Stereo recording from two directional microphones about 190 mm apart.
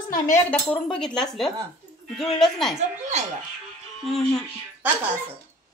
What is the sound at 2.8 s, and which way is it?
Speech, 40° right (ahead or behind).